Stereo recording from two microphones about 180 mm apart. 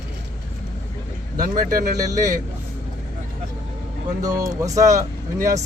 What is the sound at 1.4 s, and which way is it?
Speech, 50° right (ahead or behind).